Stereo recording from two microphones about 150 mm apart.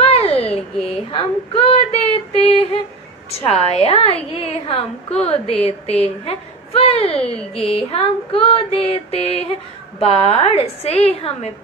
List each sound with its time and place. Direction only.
0.0 s a sound: 40° left (ahead or behind)
0.8 s child singing: 40° left (ahead or behind)
3.4 s a woman's voice: 40° left (ahead or behind)